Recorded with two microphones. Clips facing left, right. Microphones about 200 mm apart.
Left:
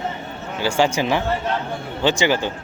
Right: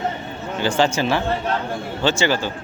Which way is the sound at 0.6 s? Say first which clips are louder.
Even; 10° left (ahead or behind).